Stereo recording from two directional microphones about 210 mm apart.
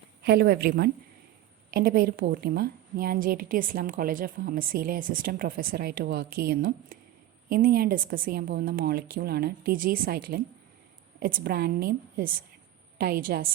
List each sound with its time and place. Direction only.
0.2 s a woman's voice: 50° right (ahead or behind)